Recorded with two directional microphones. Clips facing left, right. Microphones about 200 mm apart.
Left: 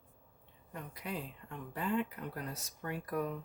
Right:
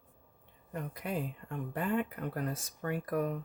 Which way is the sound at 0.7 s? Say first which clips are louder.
Right 5 dB; 50° right (ahead or behind).